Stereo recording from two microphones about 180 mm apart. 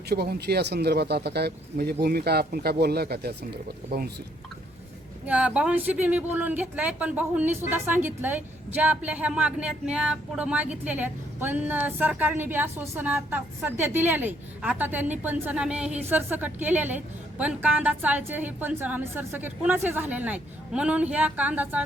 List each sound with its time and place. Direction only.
0.1 s speech: 65° right (ahead or behind)
5.2 s a woman's voice: 5° right (ahead or behind)